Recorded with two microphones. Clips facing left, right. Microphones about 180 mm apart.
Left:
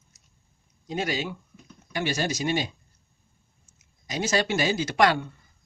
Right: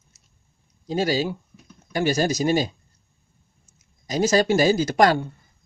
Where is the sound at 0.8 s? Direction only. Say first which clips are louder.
Right 6 dB; 35° right (ahead or behind).